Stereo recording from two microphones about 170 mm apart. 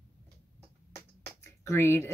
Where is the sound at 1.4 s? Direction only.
15° left (ahead or behind).